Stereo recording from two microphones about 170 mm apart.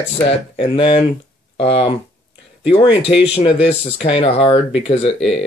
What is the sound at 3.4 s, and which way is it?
Speech, 35° left (ahead or behind).